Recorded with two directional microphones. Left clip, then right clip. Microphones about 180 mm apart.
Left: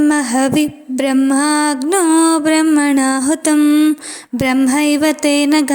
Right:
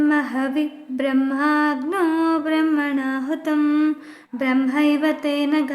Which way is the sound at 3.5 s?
25° left (ahead or behind).